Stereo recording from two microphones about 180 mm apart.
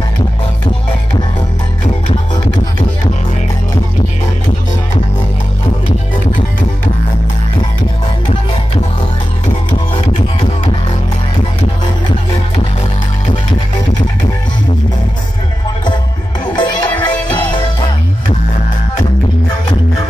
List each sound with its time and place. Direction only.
16.5 s music: 25° left (ahead or behind)